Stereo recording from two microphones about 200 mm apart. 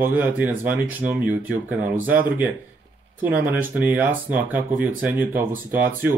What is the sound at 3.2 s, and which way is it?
Speech, 10° right (ahead or behind).